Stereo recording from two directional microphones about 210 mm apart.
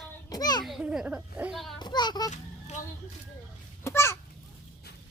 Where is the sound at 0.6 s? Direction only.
5° right (ahead or behind).